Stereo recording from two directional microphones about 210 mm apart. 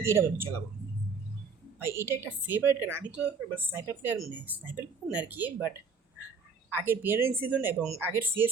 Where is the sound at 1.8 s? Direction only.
10° right (ahead or behind).